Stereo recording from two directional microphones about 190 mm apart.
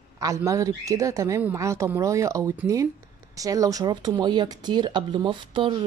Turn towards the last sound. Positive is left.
turn(degrees=-25)  # may be behind; listen again after turning